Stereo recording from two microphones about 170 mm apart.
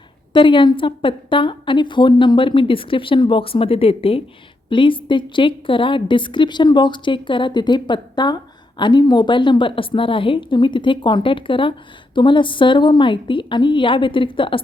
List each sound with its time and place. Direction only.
0.3 s a woman's voice: 30° left (ahead or behind)